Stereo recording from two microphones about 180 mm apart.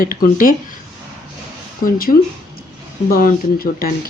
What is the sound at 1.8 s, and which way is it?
Speech, 55° left (ahead or behind).